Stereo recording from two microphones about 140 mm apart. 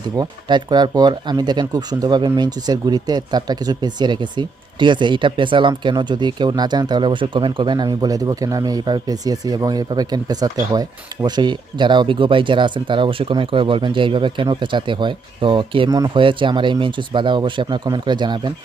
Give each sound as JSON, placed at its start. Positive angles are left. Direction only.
{"t": 0.2, "sound": "speech", "side_deg": -30}